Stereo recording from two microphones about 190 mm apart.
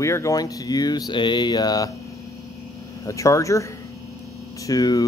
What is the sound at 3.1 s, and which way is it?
Speech, 15° left (ahead or behind).